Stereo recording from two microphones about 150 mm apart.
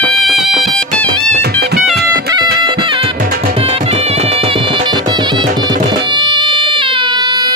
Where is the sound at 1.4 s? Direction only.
90° right.